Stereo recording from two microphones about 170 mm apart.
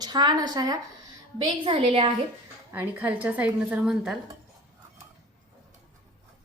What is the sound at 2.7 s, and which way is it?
A woman's voice, 10° right (ahead or behind).